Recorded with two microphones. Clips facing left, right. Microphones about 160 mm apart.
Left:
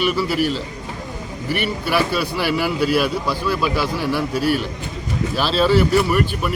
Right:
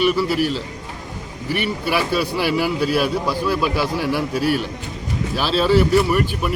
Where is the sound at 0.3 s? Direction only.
40° right (ahead or behind).